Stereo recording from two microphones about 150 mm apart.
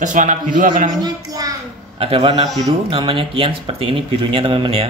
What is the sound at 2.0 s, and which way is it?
Speech, 40° right (ahead or behind).